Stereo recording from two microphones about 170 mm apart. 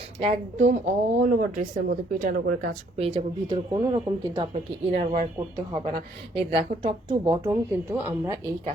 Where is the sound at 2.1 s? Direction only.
55° right (ahead or behind).